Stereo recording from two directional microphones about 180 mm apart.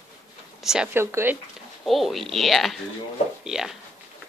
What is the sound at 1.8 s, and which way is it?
Speech, centre (ahead or behind).